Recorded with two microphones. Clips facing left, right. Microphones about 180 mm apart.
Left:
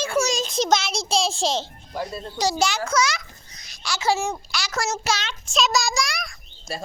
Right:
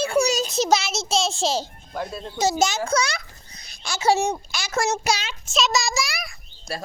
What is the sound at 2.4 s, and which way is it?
Speech, 20° right (ahead or behind).